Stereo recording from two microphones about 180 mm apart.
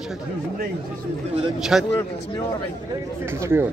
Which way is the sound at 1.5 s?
Centre (ahead or behind).